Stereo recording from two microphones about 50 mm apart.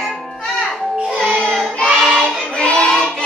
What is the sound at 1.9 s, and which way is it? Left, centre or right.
Music, centre.